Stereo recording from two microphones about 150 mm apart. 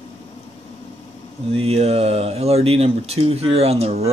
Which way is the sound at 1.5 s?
40° right (ahead or behind).